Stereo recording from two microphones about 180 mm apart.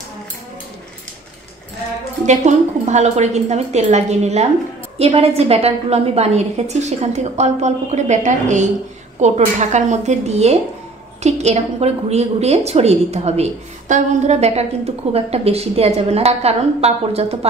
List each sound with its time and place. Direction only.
2.2 s a woman's voice: 40° right (ahead or behind)